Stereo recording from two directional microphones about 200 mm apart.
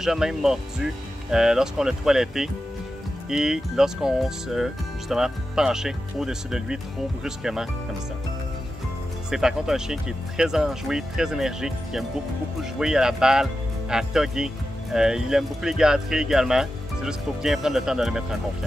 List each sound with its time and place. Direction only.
0.0 s speech: centre (ahead or behind)
9.3 s speech: 5° right (ahead or behind)